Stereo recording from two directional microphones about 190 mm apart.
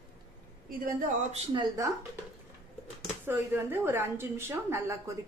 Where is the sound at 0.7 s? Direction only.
45° right (ahead or behind).